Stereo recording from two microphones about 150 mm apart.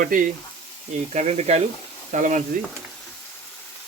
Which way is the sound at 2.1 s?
55° right (ahead or behind).